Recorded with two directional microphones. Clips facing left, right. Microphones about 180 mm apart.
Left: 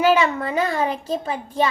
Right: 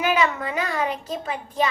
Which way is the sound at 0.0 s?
30° left (ahead or behind).